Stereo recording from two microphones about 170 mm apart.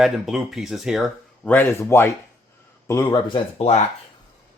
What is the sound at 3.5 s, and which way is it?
Speech, 40° left (ahead or behind).